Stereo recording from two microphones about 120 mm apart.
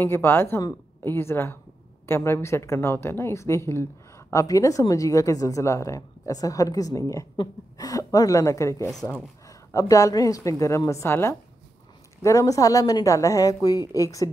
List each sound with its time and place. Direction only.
0.0 s a woman's voice: 20° left (ahead or behind)
8.9 s speech: 10° left (ahead or behind)
9.7 s a woman's voice: 30° left (ahead or behind)